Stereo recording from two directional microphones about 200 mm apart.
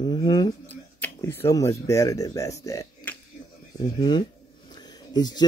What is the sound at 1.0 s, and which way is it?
Speech, 10° left (ahead or behind).